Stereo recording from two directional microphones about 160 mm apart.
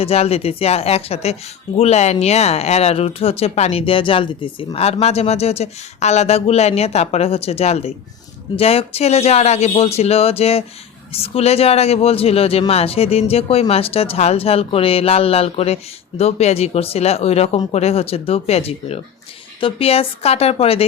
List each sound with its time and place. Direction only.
0.0 s speech: 40° left (ahead or behind)